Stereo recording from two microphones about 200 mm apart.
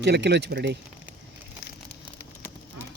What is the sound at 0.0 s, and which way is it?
Speech, 55° right (ahead or behind).